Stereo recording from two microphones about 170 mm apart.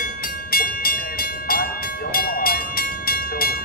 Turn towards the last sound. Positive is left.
turn(degrees=60)  # may be behind; listen again after turning